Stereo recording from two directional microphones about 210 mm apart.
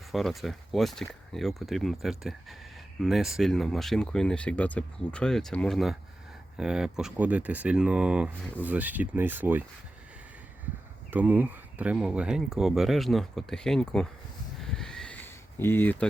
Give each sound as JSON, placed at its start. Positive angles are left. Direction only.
{"t": 0.1, "sound": "speech", "side_deg": 0}
{"t": 11.1, "sound": "speech", "side_deg": -10}
{"t": 14.6, "sound": "a sound", "side_deg": 0}